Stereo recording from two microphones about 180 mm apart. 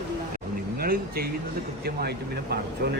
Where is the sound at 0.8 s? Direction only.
55° right (ahead or behind).